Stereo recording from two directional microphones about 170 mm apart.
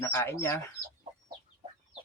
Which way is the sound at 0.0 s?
15° left (ahead or behind).